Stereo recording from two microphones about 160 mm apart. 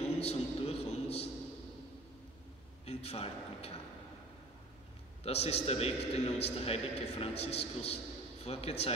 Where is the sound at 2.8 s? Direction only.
40° left (ahead or behind).